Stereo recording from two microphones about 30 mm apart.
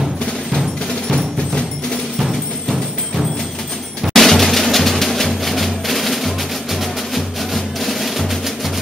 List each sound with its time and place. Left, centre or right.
1.0 s music: left
2.2 s music: centre
4.1 s music: centre